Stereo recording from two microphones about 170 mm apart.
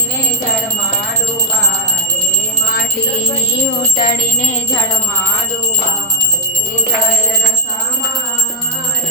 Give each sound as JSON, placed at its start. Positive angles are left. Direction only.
{"t": 3.9, "sound": "music", "side_deg": 55}